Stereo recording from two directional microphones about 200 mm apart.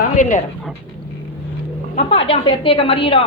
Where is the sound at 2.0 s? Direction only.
30° left (ahead or behind).